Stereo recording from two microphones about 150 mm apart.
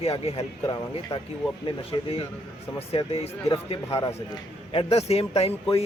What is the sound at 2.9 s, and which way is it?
A man's voice, 40° left (ahead or behind).